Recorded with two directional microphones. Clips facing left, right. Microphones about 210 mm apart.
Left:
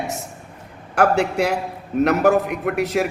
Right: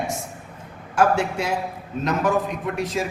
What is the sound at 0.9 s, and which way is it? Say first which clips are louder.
A man's voice: left 2 dB; 65° left (ahead or behind).